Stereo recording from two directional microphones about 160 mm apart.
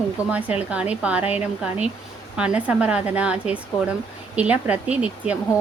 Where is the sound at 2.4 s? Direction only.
5° right (ahead or behind).